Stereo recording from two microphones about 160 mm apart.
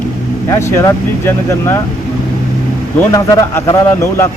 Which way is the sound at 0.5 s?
20° left (ahead or behind).